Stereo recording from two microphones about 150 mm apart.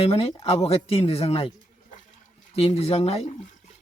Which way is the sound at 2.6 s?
40° left (ahead or behind).